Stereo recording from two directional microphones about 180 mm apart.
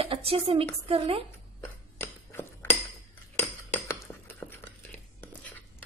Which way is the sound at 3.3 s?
15° left (ahead or behind).